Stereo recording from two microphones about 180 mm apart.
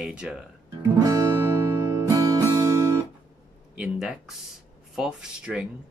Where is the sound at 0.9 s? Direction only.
20° right (ahead or behind).